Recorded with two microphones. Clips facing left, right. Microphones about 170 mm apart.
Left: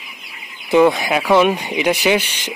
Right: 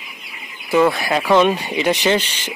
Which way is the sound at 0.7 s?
15° left (ahead or behind).